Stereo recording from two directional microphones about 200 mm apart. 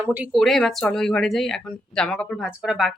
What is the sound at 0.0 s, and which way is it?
Speech, 10° right (ahead or behind).